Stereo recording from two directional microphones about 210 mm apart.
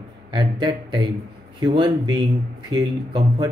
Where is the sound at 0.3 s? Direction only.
20° right (ahead or behind).